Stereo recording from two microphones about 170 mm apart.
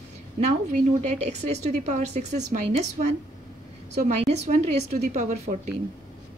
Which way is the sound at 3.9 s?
40° right (ahead or behind).